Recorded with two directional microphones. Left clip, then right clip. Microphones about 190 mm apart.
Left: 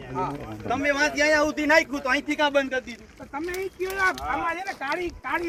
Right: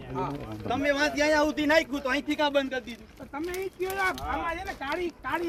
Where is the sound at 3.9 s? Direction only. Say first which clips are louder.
Left 5 dB; centre (ahead or behind).